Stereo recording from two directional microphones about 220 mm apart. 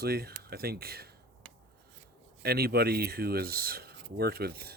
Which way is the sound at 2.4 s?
45° right (ahead or behind).